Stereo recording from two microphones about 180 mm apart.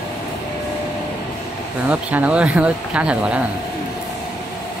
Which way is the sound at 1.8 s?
5° right (ahead or behind).